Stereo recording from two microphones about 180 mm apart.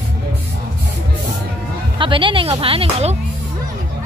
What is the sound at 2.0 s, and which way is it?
Speech, 30° right (ahead or behind).